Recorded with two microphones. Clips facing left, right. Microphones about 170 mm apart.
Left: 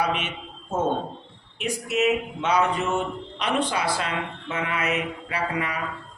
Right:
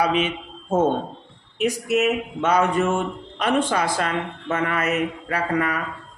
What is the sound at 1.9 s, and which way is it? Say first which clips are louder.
Speech: left 1 dB; 50° right (ahead or behind).